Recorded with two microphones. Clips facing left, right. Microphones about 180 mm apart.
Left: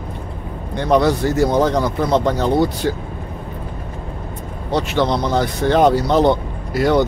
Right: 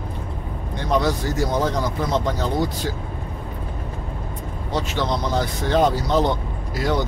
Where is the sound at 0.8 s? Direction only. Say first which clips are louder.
Left 6 dB; 65° left (ahead or behind).